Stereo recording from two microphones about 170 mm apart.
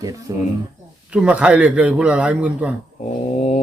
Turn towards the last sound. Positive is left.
turn(degrees=40)  # may be behind; listen again after turning